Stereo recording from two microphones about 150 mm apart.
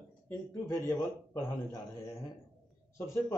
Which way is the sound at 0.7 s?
20° left (ahead or behind).